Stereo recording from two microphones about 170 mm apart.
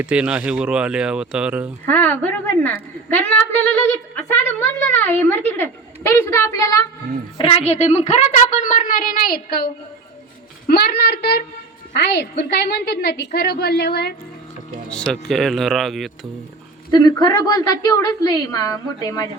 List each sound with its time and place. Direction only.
0.0 s speech: 5° right (ahead or behind)
1.9 s a woman's voice: 10° left (ahead or behind)
4.9 s a woman's voice: 10° left (ahead or behind)
7.3 s a woman's voice: 30° left (ahead or behind); by 11.4 s 70° left (ahead or behind)
11.9 s a woman's voice: 85° left
14.8 s speech: 5° left (ahead or behind)
16.9 s a woman's voice: 25° left (ahead or behind)